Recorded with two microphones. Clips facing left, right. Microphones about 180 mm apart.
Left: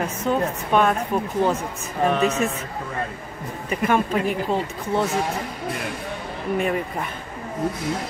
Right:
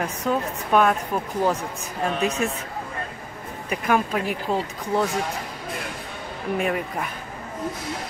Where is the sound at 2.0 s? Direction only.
65° left (ahead or behind).